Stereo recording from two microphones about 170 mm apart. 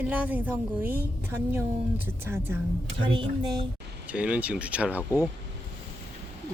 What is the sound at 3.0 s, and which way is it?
Speech, 30° right (ahead or behind).